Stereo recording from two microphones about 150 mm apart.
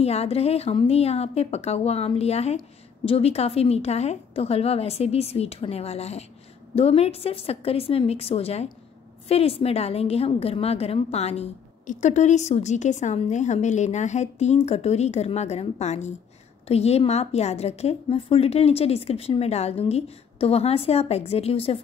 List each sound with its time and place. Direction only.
0.0 s a woman's voice: 45° left (ahead or behind)